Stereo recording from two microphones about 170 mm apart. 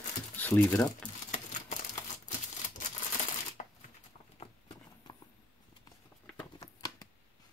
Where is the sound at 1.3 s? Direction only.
45° left (ahead or behind).